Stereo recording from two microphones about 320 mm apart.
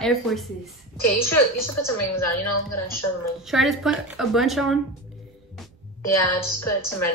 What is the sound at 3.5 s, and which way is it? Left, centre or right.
A woman's voice, centre.